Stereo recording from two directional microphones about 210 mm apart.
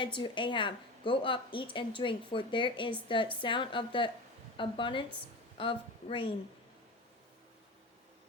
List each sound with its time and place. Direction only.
0.0 s a woman's voice: 25° left (ahead or behind)